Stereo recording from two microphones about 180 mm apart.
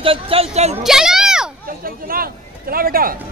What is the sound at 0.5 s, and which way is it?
Speech, 35° right (ahead or behind).